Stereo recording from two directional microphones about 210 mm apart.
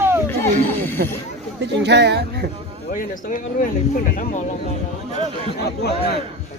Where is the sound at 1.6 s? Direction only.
55° right (ahead or behind).